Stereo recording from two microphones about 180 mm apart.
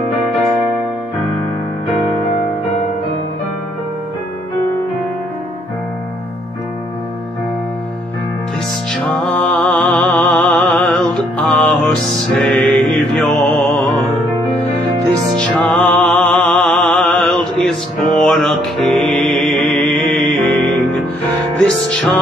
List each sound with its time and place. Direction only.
9.0 s music: 5° left (ahead or behind)
15.0 s music: 5° left (ahead or behind)